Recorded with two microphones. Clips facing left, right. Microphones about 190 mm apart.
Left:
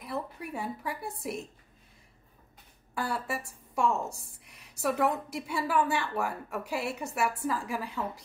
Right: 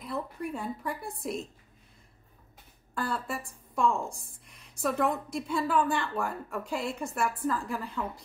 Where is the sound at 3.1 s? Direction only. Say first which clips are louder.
Left 2 dB; 10° left (ahead or behind).